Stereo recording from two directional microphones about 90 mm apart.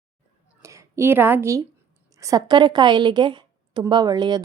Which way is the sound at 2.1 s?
35° right (ahead or behind).